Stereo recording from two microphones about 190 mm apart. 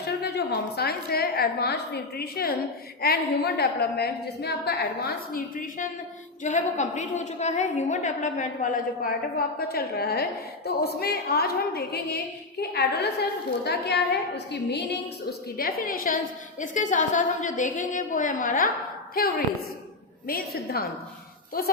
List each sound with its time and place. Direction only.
0.0 s a woman's voice: 60° left (ahead or behind)
15.3 s a woman's voice: 50° left (ahead or behind)